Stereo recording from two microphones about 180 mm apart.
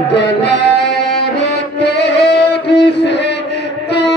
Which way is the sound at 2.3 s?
70° left (ahead or behind).